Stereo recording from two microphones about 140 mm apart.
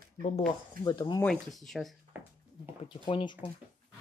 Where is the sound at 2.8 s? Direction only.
40° left (ahead or behind).